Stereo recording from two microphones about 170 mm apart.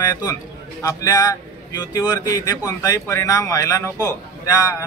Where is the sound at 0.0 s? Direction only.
20° left (ahead or behind).